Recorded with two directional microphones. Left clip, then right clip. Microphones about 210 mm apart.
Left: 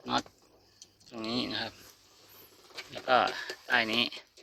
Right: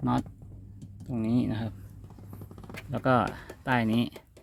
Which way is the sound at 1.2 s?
10° right (ahead or behind).